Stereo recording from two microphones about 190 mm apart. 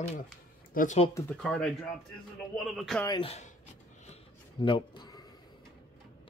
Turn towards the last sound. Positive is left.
turn(degrees=20)  # may be behind; listen again after turning